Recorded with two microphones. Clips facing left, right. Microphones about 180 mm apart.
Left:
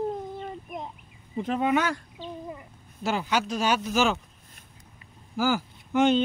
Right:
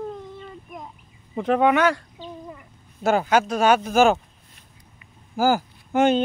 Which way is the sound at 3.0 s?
50° right (ahead or behind).